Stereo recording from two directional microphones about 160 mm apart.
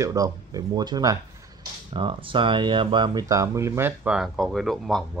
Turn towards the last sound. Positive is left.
turn(degrees=0)  # may be behind; listen again after turning